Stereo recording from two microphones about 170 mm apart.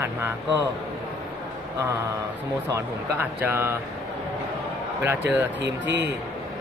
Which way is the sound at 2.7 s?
10° right (ahead or behind).